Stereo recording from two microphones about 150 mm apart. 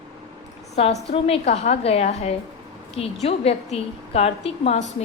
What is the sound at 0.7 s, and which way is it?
A woman's voice, 40° left (ahead or behind).